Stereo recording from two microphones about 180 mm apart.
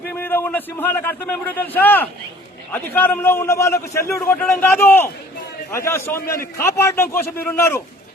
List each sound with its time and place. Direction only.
0.2 s a man's voice: 10° left (ahead or behind)